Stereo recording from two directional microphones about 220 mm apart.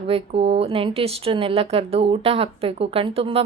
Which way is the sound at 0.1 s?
25° right (ahead or behind).